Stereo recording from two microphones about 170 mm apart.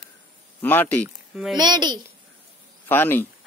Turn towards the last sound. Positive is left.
turn(degrees=10)  # may be behind; listen again after turning